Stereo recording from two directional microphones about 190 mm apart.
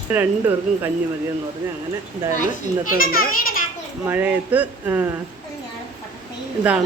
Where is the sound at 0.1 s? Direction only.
10° right (ahead or behind).